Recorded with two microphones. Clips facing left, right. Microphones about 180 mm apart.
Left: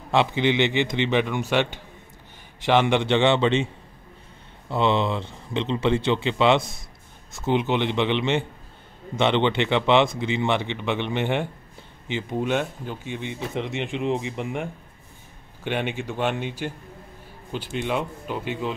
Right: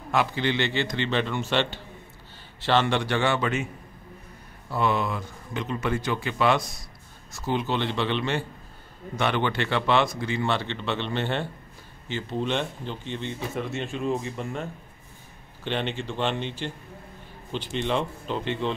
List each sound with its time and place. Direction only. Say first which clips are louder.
0.1 s a man's voice: left 4 dB; 20° left (ahead or behind)
4.6 s a man's voice: left 3 dB; 25° left (ahead or behind)